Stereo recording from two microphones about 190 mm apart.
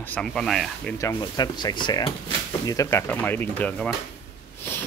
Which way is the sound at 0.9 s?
20° left (ahead or behind).